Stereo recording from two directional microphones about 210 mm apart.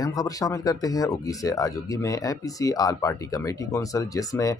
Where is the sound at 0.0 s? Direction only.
15° left (ahead or behind).